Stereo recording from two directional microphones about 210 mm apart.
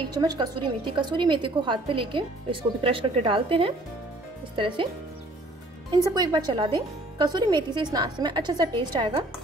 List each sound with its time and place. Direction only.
0.1 s a woman's voice: 20° right (ahead or behind)
6.1 s a woman's voice: 20° right (ahead or behind)